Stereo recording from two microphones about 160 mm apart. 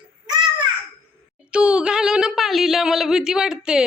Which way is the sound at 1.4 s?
5° right (ahead or behind).